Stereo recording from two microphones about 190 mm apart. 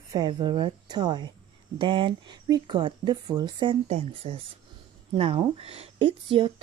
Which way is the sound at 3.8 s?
35° right (ahead or behind).